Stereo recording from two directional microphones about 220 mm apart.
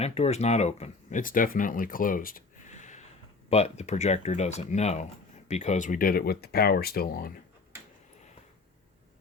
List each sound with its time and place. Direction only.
0.0 s speech: 30° left (ahead or behind)